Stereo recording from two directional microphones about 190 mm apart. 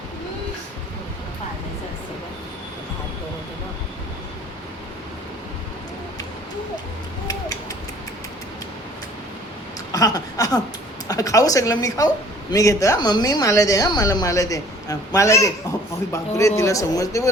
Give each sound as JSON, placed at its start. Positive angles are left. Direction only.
{"t": 9.9, "sound": "speech", "side_deg": 20}
{"t": 16.6, "sound": "speech", "side_deg": 15}